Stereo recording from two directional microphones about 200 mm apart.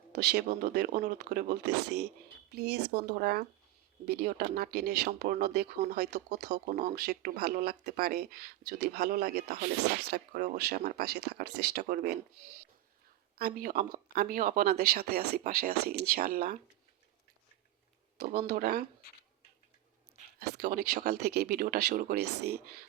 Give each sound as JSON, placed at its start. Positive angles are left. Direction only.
{"t": 0.1, "sound": "speech", "side_deg": -55}
{"t": 10.7, "sound": "speech", "side_deg": -50}
{"t": 13.4, "sound": "speech", "side_deg": -50}
{"t": 18.2, "sound": "speech", "side_deg": -50}
{"t": 20.6, "sound": "speech", "side_deg": -45}